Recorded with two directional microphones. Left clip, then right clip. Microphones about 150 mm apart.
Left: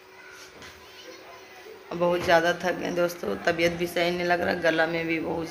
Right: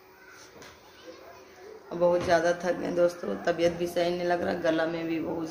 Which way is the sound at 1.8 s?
Centre (ahead or behind).